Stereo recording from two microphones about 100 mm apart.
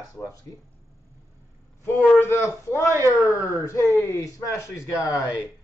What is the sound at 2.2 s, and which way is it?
Speech, 25° left (ahead or behind).